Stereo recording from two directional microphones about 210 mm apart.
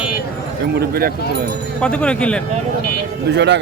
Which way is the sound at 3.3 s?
55° right (ahead or behind).